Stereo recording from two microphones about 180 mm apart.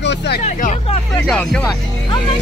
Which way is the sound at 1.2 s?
5° left (ahead or behind).